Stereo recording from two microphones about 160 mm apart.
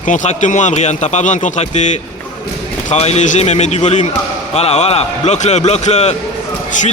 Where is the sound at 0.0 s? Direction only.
50° left (ahead or behind).